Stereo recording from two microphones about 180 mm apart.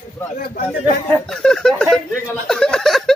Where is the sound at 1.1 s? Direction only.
5° left (ahead or behind).